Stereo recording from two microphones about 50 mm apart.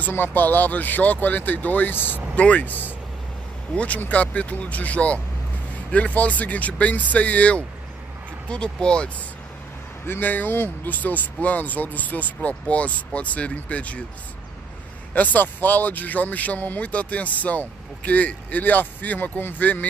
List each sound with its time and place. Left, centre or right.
0.1 s speech: left
2.3 s speech: left
10.0 s speech: left
11.0 s speech: left
15.1 s speech: left